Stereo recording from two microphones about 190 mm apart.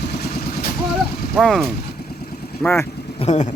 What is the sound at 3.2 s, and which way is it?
Vehicle, 40° left (ahead or behind).